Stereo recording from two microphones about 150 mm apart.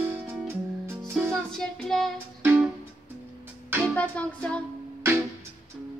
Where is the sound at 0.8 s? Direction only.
15° right (ahead or behind).